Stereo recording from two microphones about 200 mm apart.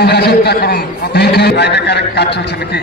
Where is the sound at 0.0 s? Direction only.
55° left (ahead or behind).